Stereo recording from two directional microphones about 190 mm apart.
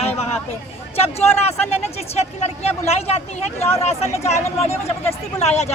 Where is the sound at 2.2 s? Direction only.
35° left (ahead or behind).